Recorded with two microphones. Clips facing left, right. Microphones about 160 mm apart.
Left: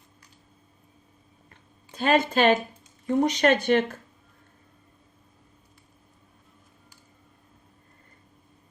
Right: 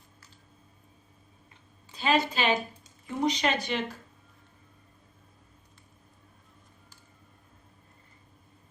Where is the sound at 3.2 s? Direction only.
50° left (ahead or behind).